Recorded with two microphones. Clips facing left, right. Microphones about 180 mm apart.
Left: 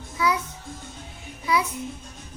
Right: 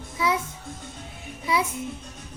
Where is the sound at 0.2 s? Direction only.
25° right (ahead or behind).